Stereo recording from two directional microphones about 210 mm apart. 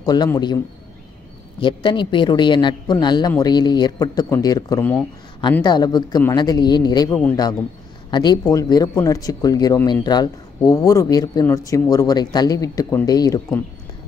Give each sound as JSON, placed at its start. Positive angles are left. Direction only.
{"t": 0.0, "sound": "a man's voice", "side_deg": 20}
{"t": 1.6, "sound": "a man's voice", "side_deg": 25}